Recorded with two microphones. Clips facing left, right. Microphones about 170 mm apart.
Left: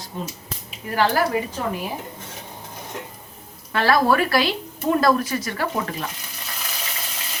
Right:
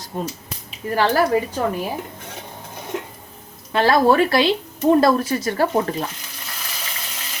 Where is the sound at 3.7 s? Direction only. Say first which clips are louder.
Right 3 dB; 25° right (ahead or behind).